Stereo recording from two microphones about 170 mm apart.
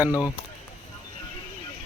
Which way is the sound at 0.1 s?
20° left (ahead or behind).